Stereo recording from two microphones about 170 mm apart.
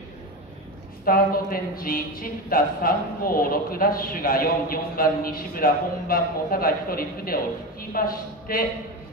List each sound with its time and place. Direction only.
1.0 s speech: 60° left (ahead or behind)